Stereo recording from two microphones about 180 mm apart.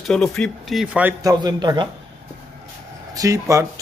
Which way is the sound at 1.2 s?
25° right (ahead or behind).